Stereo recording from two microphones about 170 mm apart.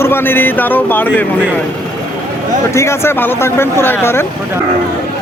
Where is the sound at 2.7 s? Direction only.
15° left (ahead or behind).